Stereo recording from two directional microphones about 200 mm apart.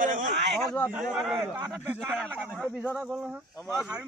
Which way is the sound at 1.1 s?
10° right (ahead or behind).